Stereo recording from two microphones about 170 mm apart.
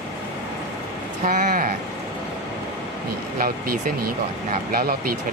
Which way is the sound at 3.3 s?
60° right (ahead or behind).